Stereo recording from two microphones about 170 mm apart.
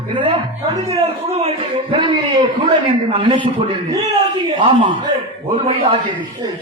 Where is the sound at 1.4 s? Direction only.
35° right (ahead or behind).